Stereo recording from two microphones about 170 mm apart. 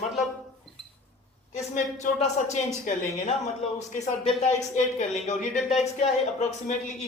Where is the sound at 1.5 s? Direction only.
45° left (ahead or behind).